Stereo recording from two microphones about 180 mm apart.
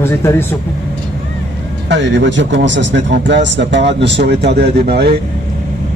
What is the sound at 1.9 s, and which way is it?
A man's voice, 80° right.